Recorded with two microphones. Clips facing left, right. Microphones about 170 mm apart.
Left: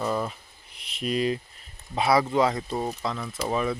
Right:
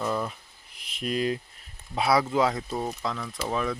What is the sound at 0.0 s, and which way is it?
Speech, 5° left (ahead or behind).